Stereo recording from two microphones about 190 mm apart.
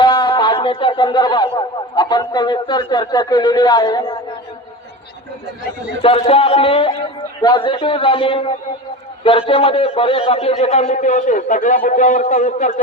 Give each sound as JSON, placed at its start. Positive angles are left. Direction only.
{"t": 0.0, "sound": "speech", "side_deg": 25}
{"t": 6.0, "sound": "a man's voice", "side_deg": 30}